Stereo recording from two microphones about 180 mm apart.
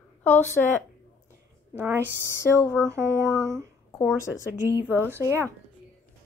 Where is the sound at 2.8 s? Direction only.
15° right (ahead or behind).